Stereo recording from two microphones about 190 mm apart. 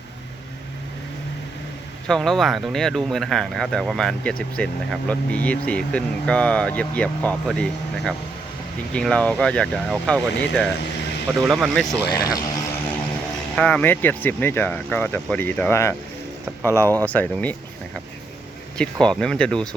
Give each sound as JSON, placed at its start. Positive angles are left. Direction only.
{"t": 2.0, "sound": "speech", "side_deg": 0}
{"t": 11.3, "sound": "speech", "side_deg": 0}
{"t": 12.0, "sound": "speech", "side_deg": 20}
{"t": 13.6, "sound": "speech", "side_deg": 5}